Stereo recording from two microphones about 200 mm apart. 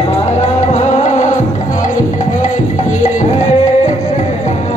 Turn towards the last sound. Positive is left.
turn(degrees=35)  # may be behind; listen again after turning